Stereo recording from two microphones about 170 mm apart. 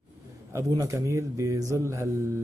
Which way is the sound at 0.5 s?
20° right (ahead or behind).